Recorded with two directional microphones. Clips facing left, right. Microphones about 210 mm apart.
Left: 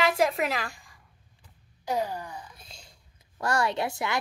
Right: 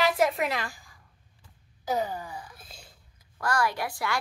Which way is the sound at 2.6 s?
5° right (ahead or behind).